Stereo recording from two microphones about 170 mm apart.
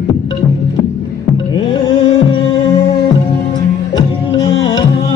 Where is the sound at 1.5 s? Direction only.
30° left (ahead or behind).